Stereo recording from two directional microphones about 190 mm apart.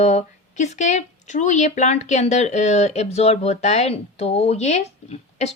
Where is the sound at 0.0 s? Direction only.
40° left (ahead or behind).